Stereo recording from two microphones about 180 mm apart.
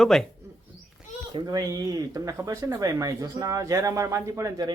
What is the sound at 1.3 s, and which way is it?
Speech, 20° right (ahead or behind).